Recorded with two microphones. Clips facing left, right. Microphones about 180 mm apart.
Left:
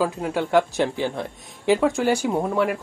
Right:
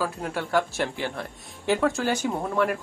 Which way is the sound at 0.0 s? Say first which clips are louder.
Left 6 dB; 15° left (ahead or behind).